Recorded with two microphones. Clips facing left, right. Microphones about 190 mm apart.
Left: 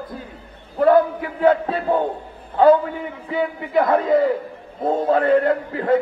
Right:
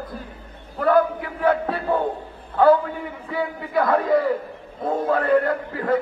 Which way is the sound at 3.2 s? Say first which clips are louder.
Left 4 dB; 20° left (ahead or behind).